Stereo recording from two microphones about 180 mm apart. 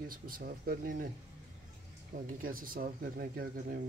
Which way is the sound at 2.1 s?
50° right (ahead or behind).